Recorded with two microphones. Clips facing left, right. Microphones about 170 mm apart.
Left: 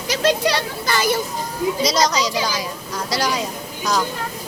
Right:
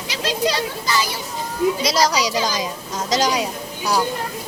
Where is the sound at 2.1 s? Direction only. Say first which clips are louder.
Right 1 dB; 15° right (ahead or behind).